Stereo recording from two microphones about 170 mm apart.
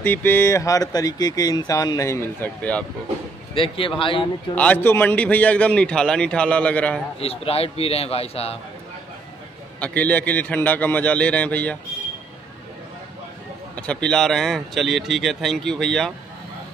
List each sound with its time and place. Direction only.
0.0 s speech: 10° left (ahead or behind)
3.5 s a man's voice: 30° left (ahead or behind)
4.6 s a man's voice: 10° left (ahead or behind)
7.2 s a man's voice: 35° left (ahead or behind)
9.8 s a man's voice: 10° left (ahead or behind)
13.7 s a man's voice: 5° left (ahead or behind)